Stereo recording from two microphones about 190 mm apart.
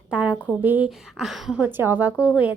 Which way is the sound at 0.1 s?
5° right (ahead or behind).